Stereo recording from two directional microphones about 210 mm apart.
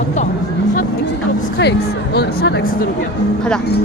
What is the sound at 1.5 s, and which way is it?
Speech, 50° left (ahead or behind).